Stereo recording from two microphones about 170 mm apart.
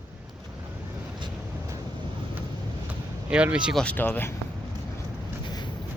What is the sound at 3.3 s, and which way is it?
Speech, 5° right (ahead or behind).